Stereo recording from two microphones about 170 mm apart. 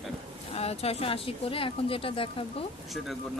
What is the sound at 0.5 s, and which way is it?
Speech, 35° left (ahead or behind).